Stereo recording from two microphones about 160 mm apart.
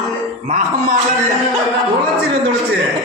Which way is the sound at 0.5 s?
50° right (ahead or behind).